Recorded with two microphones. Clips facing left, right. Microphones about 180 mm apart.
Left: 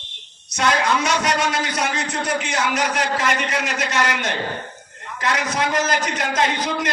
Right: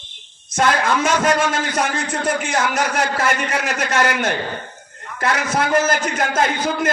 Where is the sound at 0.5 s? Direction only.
50° right (ahead or behind).